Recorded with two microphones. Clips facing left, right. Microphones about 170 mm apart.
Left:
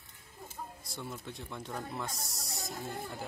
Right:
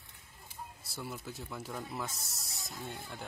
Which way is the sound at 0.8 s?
5° right (ahead or behind).